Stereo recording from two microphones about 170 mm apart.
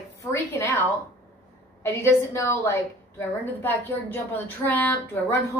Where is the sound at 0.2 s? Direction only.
15° left (ahead or behind).